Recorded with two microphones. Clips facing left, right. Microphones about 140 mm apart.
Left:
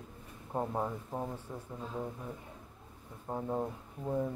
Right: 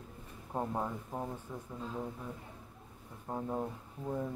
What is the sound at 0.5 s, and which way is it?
Speech, 5° left (ahead or behind).